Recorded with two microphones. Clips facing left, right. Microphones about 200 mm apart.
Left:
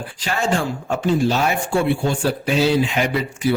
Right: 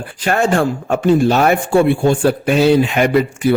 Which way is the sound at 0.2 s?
55° right (ahead or behind).